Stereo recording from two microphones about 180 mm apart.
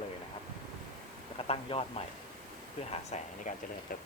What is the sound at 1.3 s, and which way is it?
Speech, 35° left (ahead or behind).